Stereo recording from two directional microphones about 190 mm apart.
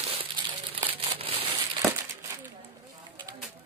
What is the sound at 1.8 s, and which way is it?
Crumpling, 15° right (ahead or behind).